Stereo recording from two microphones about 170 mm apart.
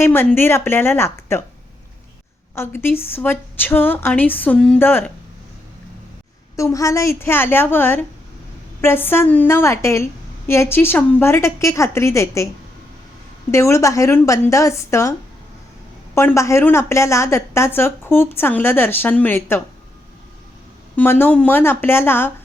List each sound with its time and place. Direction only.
0.0 s a woman's voice: 15° left (ahead or behind)
2.6 s a woman's voice: 15° left (ahead or behind)
6.6 s a woman's voice: 20° left (ahead or behind)
13.5 s a woman's voice: 15° left (ahead or behind)
16.1 s a woman's voice: 15° left (ahead or behind)
20.9 s a woman's voice: 10° left (ahead or behind)